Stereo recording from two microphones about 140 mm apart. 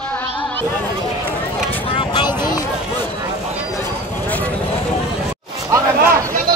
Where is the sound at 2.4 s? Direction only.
25° left (ahead or behind).